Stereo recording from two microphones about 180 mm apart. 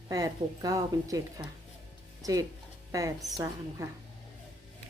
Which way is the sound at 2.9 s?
20° right (ahead or behind).